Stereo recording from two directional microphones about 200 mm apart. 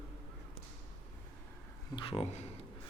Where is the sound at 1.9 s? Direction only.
25° left (ahead or behind).